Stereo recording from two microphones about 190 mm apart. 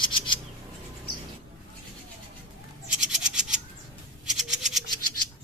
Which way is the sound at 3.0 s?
5° right (ahead or behind).